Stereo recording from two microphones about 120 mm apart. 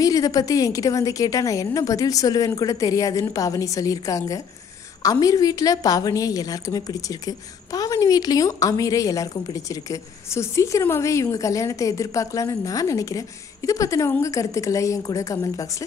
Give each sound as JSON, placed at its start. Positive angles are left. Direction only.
{"t": 0.0, "sound": "a woman's voice", "side_deg": 30}